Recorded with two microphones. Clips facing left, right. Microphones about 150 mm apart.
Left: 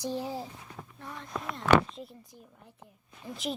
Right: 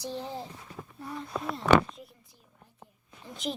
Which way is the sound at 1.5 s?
5° right (ahead or behind).